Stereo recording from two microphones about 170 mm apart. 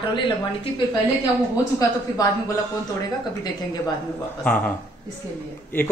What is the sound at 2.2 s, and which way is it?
Speech, 20° left (ahead or behind).